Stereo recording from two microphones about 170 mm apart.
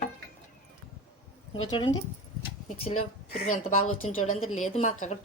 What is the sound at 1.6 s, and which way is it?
Speech, 30° left (ahead or behind).